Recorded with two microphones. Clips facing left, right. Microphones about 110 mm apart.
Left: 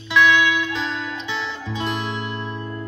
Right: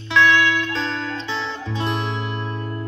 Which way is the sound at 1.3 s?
30° right (ahead or behind).